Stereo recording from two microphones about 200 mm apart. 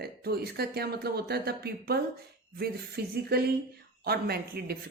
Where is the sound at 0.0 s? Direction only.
50° right (ahead or behind).